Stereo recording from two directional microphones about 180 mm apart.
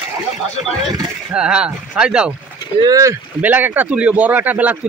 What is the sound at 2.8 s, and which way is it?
A man's voice, 20° right (ahead or behind).